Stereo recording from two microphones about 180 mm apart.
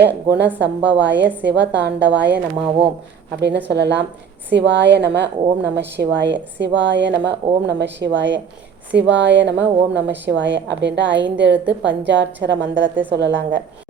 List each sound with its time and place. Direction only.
0.0 s a woman's voice: 70° right (ahead or behind)
3.7 s a woman's voice: 70° right (ahead or behind)